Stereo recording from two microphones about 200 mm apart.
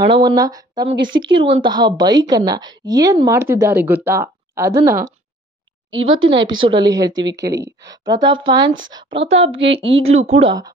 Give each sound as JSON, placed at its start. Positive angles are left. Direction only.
{"t": 0.1, "sound": "speech", "side_deg": -20}
{"t": 0.9, "sound": "speech", "side_deg": -60}
{"t": 1.4, "sound": "speech", "side_deg": -25}
{"t": 6.2, "sound": "speech", "side_deg": -25}